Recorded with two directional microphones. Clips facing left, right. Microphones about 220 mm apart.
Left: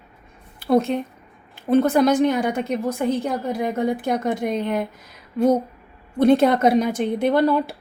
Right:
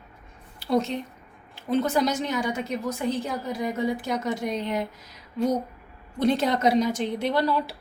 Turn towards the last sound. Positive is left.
turn(degrees=55)  # may be behind; listen again after turning